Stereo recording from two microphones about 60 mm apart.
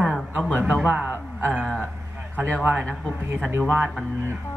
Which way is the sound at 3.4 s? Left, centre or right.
Right.